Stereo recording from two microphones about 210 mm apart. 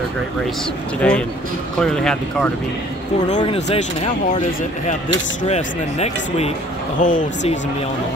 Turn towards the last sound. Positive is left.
turn(degrees=40)  # may be behind; listen again after turning